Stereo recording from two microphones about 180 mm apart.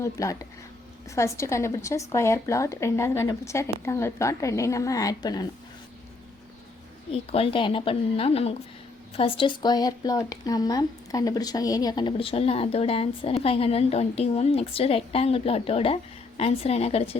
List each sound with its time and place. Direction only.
0.0 s speech: 15° left (ahead or behind)
7.1 s speech: 30° left (ahead or behind)